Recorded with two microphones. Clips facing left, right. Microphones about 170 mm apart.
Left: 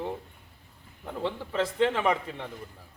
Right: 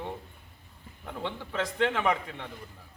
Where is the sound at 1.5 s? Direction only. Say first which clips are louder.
Left 3 dB; 30° left (ahead or behind).